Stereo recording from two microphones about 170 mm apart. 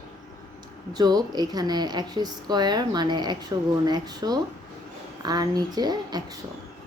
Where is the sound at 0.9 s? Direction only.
25° right (ahead or behind).